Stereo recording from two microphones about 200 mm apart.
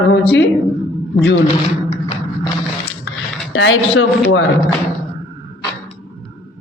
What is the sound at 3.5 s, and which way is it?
Speech, 70° left (ahead or behind).